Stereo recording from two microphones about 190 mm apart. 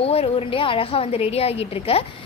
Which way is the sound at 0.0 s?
30° left (ahead or behind).